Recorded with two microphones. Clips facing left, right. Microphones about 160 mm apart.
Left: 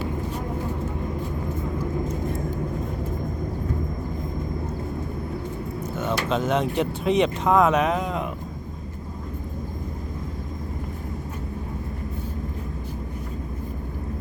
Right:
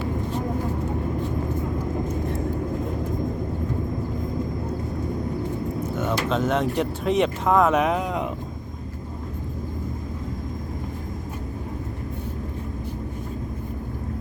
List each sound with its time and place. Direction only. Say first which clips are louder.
6.0 s a sound: even; centre (ahead or behind)
6.4 s speech: even; centre (ahead or behind)
7.7 s speech: right 1 dB; 10° right (ahead or behind)